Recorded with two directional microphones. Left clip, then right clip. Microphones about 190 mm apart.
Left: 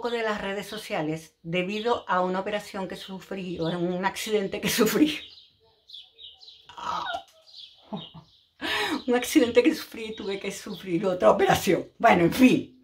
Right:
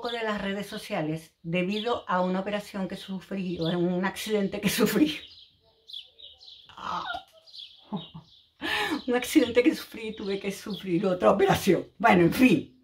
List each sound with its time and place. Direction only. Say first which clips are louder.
0.0 s speech: left 2 dB; 10° left (ahead or behind)
6.7 s a sound: left 2 dB; 5° left (ahead or behind)
8.5 s speech: left 1 dB; centre (ahead or behind)